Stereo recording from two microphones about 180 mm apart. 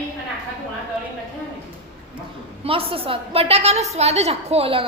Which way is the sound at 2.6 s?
30° right (ahead or behind).